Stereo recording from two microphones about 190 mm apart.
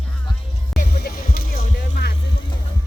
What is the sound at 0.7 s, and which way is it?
Music, 55° left (ahead or behind).